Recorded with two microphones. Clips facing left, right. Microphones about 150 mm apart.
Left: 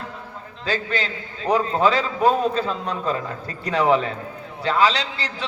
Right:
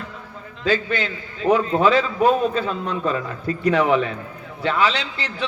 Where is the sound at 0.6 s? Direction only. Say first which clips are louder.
Right 4 dB; 35° left (ahead or behind).